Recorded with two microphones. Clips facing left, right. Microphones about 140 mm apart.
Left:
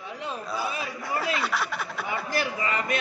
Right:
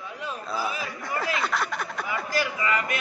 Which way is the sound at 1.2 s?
5° left (ahead or behind).